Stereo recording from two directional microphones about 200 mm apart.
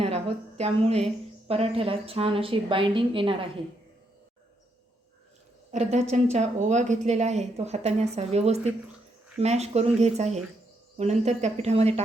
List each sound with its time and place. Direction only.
0.0 s a woman's voice: 30° right (ahead or behind)
5.7 s a woman's voice: 30° right (ahead or behind)